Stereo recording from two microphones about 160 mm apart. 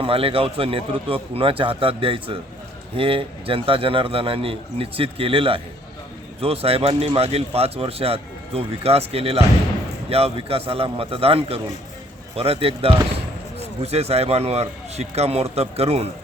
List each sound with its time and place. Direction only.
0.0 s speech: 35° right (ahead or behind)